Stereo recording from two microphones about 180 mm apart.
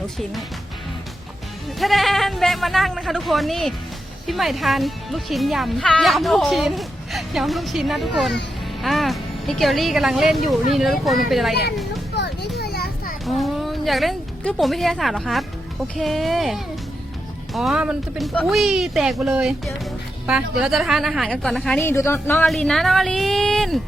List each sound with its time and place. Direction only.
1.8 s speech: centre (ahead or behind)
12.1 s children playing: 65° left (ahead or behind)
13.2 s a woman's voice: centre (ahead or behind)
22.4 s speech: centre (ahead or behind)